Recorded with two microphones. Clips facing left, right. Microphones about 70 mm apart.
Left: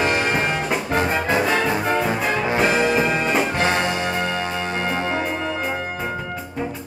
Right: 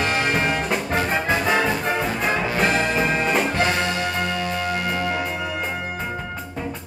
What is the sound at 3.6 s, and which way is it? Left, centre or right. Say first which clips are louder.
Music: left 1 dB; left.